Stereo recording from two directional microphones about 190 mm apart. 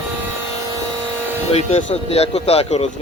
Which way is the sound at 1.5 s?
35° left (ahead or behind).